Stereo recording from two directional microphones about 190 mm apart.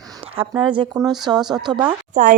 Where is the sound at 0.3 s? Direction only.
25° right (ahead or behind).